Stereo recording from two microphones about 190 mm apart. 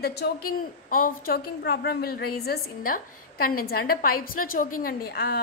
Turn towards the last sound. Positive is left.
turn(degrees=55)  # may be behind; listen again after turning